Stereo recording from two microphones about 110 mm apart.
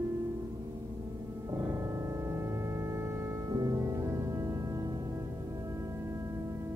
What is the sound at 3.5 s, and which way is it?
Music, 35° right (ahead or behind).